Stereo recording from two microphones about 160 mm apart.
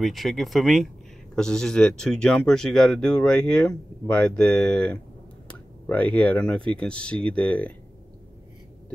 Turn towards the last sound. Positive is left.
turn(degrees=10)  # may be behind; listen again after turning